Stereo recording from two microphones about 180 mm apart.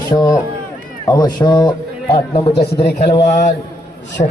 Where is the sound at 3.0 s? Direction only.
40° left (ahead or behind).